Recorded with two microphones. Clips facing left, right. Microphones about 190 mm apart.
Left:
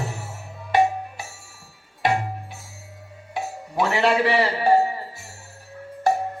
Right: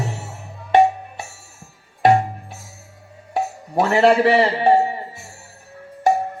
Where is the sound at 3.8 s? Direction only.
40° right (ahead or behind).